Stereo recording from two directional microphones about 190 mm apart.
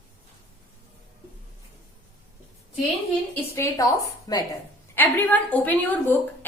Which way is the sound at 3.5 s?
15° left (ahead or behind).